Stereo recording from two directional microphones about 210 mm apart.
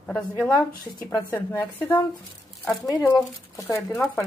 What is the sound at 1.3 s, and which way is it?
Speech, 10° left (ahead or behind).